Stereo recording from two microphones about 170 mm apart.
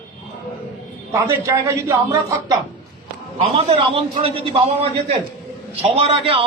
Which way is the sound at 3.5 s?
35° right (ahead or behind).